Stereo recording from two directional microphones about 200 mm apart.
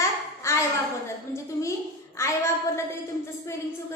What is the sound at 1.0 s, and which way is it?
A woman's voice, 15° left (ahead or behind).